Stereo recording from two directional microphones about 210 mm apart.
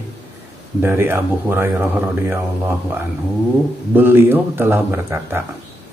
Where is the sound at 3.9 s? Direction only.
10° right (ahead or behind).